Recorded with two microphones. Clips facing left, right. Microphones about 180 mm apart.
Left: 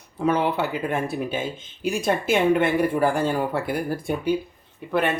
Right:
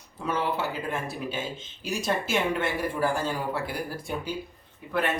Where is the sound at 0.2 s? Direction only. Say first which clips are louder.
Left 7 dB; 60° left (ahead or behind).